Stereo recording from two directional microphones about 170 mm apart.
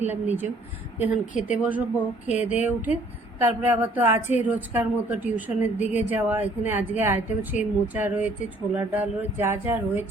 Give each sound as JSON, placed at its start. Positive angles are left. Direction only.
{"t": 0.1, "sound": "a woman's voice", "side_deg": -10}
{"t": 1.3, "sound": "a woman's voice", "side_deg": 45}
{"t": 1.5, "sound": "a woman's voice", "side_deg": -10}